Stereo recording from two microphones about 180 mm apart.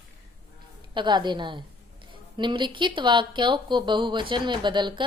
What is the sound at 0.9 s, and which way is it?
A woman's voice, 25° right (ahead or behind).